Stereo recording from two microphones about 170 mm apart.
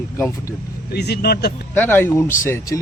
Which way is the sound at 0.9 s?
75° left (ahead or behind).